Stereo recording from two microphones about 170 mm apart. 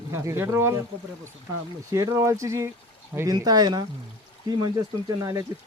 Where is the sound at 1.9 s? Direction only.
20° right (ahead or behind).